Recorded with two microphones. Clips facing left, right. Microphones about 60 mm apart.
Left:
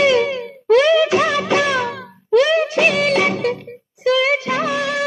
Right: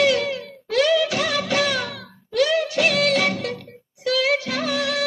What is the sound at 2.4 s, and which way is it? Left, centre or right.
Music of bollywood, left.